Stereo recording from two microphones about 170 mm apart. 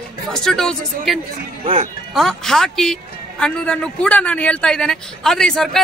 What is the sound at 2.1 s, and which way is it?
A man's voice, centre (ahead or behind).